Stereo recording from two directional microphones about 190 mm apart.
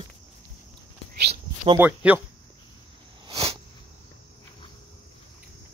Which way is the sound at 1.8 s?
10° right (ahead or behind).